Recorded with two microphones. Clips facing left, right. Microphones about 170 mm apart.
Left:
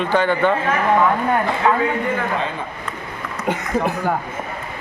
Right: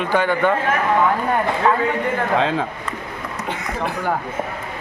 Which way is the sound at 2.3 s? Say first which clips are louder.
Right 5 dB; 90° right.